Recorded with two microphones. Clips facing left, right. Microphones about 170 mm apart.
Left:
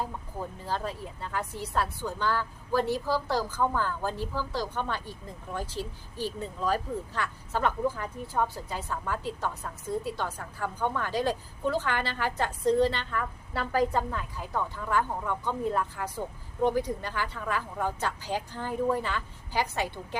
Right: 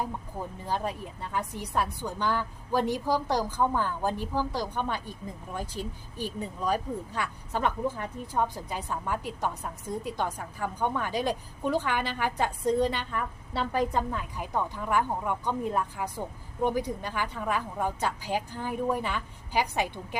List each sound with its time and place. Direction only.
0.6 s speech: 15° right (ahead or behind)